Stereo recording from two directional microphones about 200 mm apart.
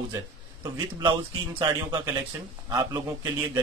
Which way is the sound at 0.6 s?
20° right (ahead or behind).